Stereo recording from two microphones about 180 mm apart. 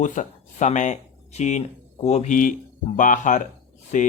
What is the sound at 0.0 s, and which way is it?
A man's voice, 45° left (ahead or behind).